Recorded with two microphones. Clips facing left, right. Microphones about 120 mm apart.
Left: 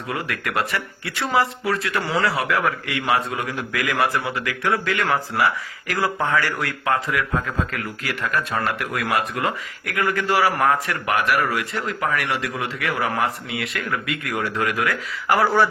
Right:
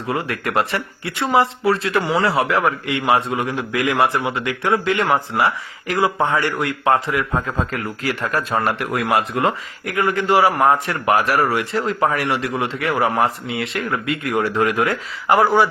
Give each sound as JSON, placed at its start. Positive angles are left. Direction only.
{"t": 0.1, "sound": "a man's voice", "side_deg": -30}